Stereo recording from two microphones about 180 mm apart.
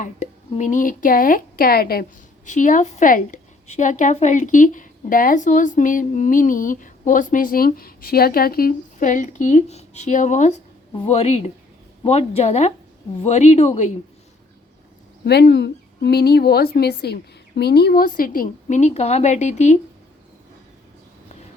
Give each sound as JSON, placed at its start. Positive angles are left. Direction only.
{"t": 0.0, "sound": "speech", "side_deg": 40}
{"t": 2.5, "sound": "a woman's voice", "side_deg": 45}
{"t": 15.2, "sound": "a woman's voice", "side_deg": 65}